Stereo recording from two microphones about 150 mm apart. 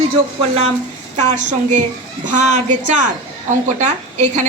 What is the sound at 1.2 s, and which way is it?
A woman's voice, 50° right (ahead or behind).